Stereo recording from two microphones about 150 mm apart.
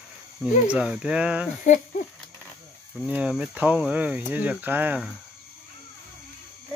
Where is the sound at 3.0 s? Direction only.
10° right (ahead or behind).